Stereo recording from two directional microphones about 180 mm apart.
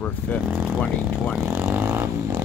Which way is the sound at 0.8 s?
5° left (ahead or behind).